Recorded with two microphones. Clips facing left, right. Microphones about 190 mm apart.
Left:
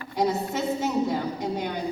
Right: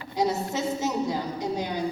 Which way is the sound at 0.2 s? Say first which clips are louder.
Left 1 dB; 55° left (ahead or behind).